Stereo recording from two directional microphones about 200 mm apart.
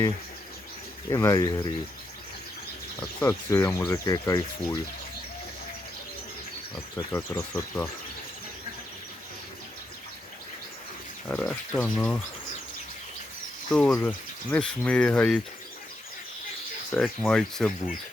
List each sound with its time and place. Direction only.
1.1 s speech: 15° left (ahead or behind)
3.2 s speech: 15° left (ahead or behind)
6.9 s speech: 15° left (ahead or behind)
11.3 s speech: 5° left (ahead or behind)
13.7 s speech: 5° left (ahead or behind)
16.9 s speech: 5° left (ahead or behind)